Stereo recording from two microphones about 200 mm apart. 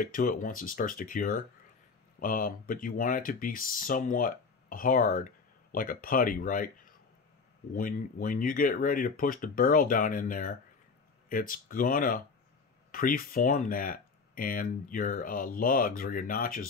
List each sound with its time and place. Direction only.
0.0 s speech: 45° left (ahead or behind)